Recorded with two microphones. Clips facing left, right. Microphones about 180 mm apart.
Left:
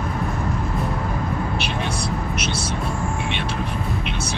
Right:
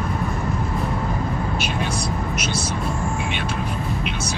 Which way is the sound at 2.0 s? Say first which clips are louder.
Even; 60° left (ahead or behind).